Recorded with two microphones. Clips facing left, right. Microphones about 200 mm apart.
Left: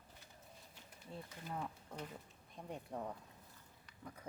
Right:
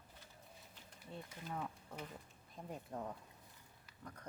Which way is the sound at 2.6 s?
Centre (ahead or behind).